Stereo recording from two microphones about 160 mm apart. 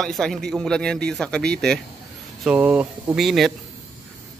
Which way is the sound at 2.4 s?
10° right (ahead or behind).